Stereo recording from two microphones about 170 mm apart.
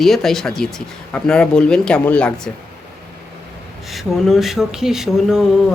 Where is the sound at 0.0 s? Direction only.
Centre (ahead or behind).